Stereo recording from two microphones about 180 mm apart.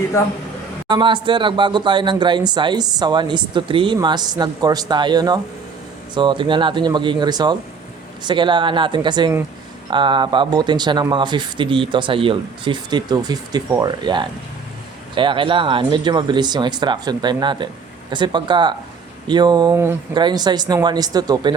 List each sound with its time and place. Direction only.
0.9 s speech: 25° right (ahead or behind)